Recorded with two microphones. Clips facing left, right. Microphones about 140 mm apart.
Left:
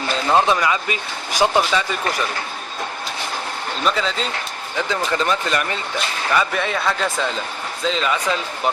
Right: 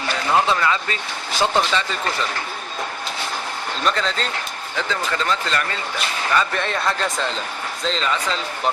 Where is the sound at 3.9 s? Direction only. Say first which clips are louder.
Left 1 dB; 5° left (ahead or behind).